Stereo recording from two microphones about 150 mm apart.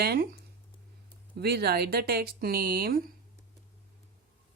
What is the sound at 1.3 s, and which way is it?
Speech, 90° right.